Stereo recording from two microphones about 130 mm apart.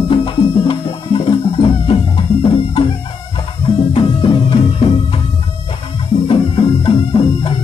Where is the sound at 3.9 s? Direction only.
40° left (ahead or behind).